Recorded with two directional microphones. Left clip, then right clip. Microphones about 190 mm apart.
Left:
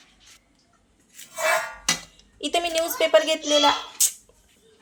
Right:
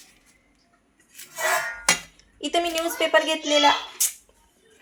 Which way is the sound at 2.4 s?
Centre (ahead or behind).